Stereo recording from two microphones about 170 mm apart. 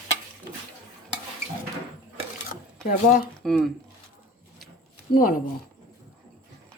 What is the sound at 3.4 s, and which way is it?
Speech, centre (ahead or behind).